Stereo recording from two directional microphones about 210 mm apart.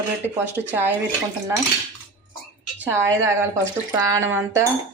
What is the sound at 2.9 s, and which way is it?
A woman's voice, 10° right (ahead or behind).